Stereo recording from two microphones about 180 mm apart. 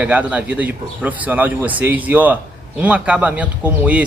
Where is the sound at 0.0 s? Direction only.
10° right (ahead or behind).